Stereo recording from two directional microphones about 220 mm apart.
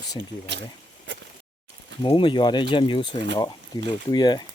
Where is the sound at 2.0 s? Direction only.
20° left (ahead or behind).